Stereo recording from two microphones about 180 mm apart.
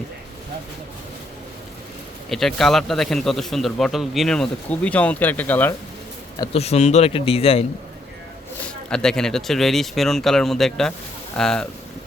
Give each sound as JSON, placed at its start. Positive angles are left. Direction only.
{"t": 2.3, "sound": "a man's voice", "side_deg": 0}
{"t": 6.4, "sound": "a man's voice", "side_deg": 35}
{"t": 8.6, "sound": "a man's voice", "side_deg": 5}